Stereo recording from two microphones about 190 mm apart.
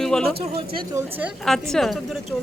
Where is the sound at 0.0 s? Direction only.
5° left (ahead or behind).